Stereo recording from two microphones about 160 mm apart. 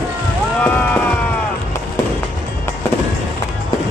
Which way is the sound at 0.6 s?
10° left (ahead or behind).